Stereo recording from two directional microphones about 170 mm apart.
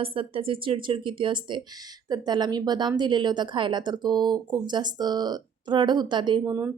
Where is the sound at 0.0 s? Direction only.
35° right (ahead or behind).